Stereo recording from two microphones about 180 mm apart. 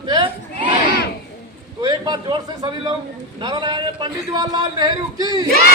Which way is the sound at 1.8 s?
25° right (ahead or behind).